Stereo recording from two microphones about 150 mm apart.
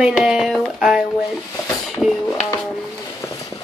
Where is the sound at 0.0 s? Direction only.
5° right (ahead or behind).